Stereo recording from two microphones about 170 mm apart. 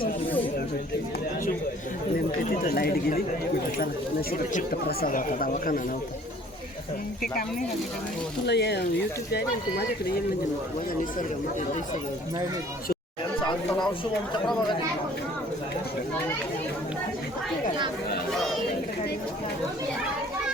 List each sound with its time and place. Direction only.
2.4 s speech: 60° left (ahead or behind)
4.3 s speech: 60° left (ahead or behind)
8.4 s speech: 75° left (ahead or behind)